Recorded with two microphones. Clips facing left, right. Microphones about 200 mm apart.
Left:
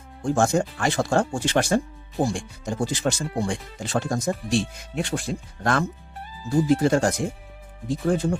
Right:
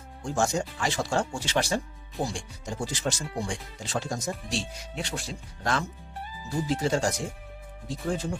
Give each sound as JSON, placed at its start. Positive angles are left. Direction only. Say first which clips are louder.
{"t": 0.2, "sound": "speech", "louder": "left 6 dB", "side_deg": 55}